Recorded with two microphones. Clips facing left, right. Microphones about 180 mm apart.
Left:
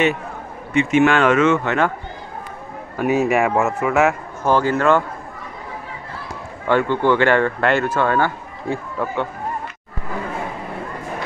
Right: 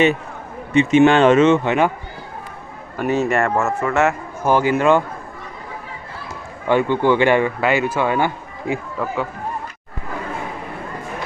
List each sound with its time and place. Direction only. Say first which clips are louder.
0.7 s speech: right 3 dB; 20° right (ahead or behind)
3.0 s a man's voice: left 1 dB; 5° left (ahead or behind)
4.5 s speech: right 1 dB; 15° right (ahead or behind)
6.7 s speech: right 1 dB; 15° right (ahead or behind)
8.9 s speech: even; centre (ahead or behind)